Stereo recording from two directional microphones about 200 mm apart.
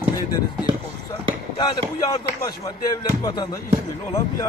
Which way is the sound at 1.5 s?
20° left (ahead or behind).